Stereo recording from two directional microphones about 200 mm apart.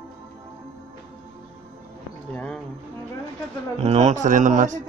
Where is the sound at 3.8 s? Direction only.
35° right (ahead or behind).